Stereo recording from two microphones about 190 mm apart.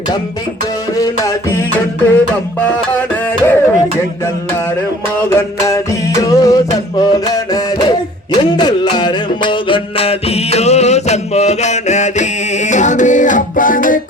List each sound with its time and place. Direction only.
0.9 s music: 15° left (ahead or behind)
2.1 s music: 5° left (ahead or behind)
5.4 s music: 15° left (ahead or behind); by 14.0 s 45° left (ahead or behind)